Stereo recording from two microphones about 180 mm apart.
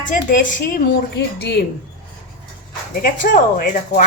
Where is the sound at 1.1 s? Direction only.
65° left (ahead or behind).